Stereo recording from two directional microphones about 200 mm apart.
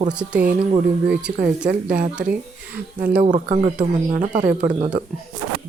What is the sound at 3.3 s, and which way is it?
Speech, 35° right (ahead or behind).